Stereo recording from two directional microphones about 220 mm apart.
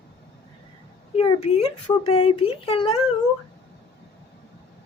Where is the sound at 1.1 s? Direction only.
25° left (ahead or behind).